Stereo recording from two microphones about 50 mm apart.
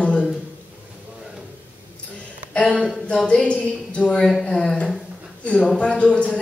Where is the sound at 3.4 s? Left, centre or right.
Left.